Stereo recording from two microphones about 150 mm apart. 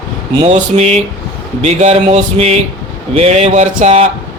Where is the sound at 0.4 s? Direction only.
45° right (ahead or behind).